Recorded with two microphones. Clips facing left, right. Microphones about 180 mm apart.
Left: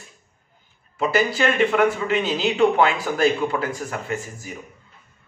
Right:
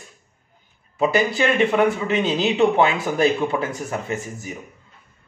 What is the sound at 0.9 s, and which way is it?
A man's voice, 20° right (ahead or behind).